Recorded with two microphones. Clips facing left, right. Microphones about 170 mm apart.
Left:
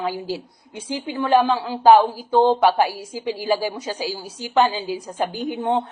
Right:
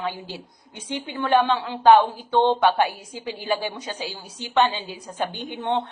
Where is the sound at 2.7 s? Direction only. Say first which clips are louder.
Left 2 dB; 30° left (ahead or behind).